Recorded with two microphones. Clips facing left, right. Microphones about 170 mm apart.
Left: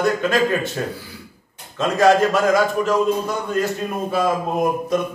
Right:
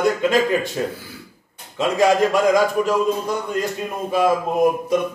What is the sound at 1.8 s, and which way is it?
A man's voice, 15° right (ahead or behind).